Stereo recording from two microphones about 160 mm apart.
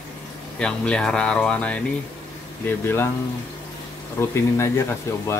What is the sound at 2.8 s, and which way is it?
Speech, 15° left (ahead or behind).